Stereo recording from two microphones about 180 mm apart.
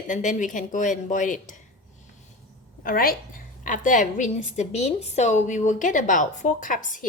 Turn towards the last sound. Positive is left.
turn(degrees=45)  # may be behind; listen again after turning